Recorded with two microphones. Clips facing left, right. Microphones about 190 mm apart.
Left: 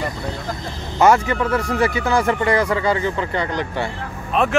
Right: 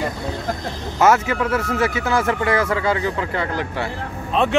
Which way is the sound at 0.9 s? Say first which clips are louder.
Left 1 dB; 5° right (ahead or behind).